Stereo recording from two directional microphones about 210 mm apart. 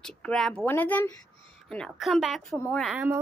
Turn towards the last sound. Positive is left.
turn(degrees=0)  # may be behind; listen again after turning